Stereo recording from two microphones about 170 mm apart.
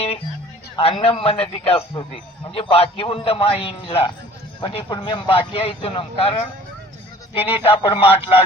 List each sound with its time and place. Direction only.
0.8 s speech: 35° left (ahead or behind)
7.3 s speech: 35° left (ahead or behind)